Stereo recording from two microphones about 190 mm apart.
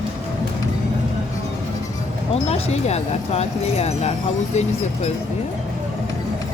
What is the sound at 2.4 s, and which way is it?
Speech, 30° left (ahead or behind).